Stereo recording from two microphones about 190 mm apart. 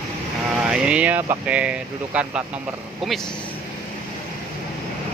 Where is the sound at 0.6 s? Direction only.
5° right (ahead or behind).